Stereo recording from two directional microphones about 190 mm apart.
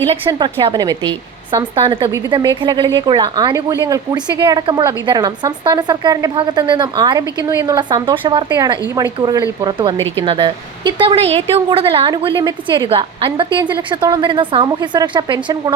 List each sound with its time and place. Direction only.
0.3 s a woman's voice: 20° right (ahead or behind)